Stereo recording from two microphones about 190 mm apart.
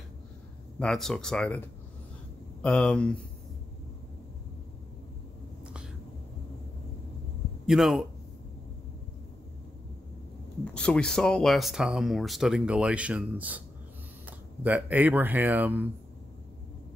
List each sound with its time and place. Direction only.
0.7 s speech: centre (ahead or behind)
2.6 s speech: 5° left (ahead or behind)
7.6 s speech: centre (ahead or behind)
10.6 s speech: 5° left (ahead or behind)
14.6 s speech: 10° right (ahead or behind)